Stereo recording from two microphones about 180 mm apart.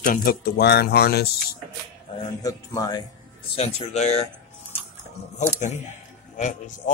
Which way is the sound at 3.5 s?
35° left (ahead or behind).